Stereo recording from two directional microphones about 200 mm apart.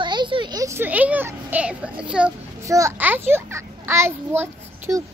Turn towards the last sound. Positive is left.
turn(degrees=-10)  # may be behind; listen again after turning